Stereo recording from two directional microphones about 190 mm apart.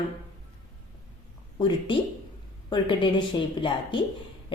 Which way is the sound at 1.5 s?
25° left (ahead or behind).